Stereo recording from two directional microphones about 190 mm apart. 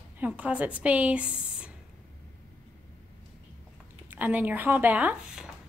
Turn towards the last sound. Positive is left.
turn(degrees=-5)  # may be behind; listen again after turning